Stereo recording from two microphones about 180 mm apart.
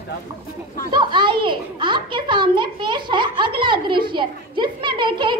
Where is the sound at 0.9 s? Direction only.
25° right (ahead or behind).